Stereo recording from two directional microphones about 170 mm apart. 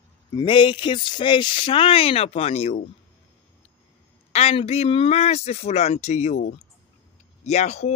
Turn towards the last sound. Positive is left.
turn(degrees=40)  # may be behind; listen again after turning